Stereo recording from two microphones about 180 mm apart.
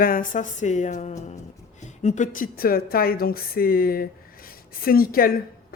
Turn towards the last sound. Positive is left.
turn(degrees=55)  # may be behind; listen again after turning